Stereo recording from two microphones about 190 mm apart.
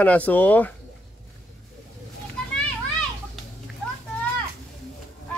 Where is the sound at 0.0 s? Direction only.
10° left (ahead or behind).